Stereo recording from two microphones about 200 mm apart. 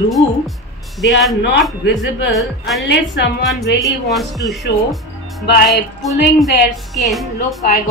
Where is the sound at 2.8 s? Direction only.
60° left (ahead or behind).